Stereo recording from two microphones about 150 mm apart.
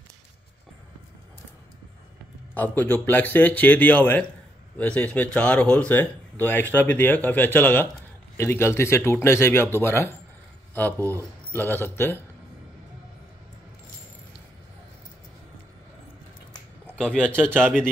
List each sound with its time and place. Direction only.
2.5 s speech: 10° left (ahead or behind)
16.9 s speech: 5° left (ahead or behind)